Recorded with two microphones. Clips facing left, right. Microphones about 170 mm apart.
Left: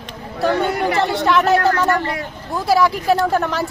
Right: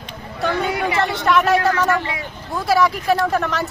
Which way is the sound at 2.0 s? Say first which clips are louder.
Left 3 dB; 45° left (ahead or behind).